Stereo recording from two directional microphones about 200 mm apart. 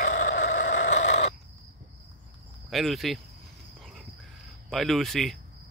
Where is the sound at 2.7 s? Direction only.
Centre (ahead or behind).